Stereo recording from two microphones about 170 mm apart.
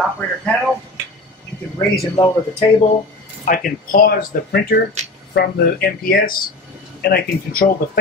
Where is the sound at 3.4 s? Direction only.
55° left (ahead or behind).